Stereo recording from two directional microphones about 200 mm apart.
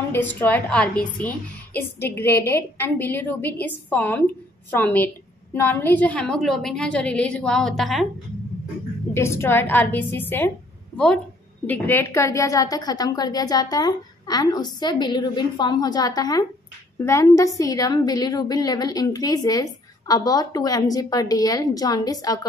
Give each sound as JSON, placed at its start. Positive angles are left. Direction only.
{"t": 0.1, "sound": "a woman's voice", "side_deg": 10}
{"t": 9.1, "sound": "a woman's voice", "side_deg": 15}
{"t": 11.6, "sound": "a woman's voice", "side_deg": 10}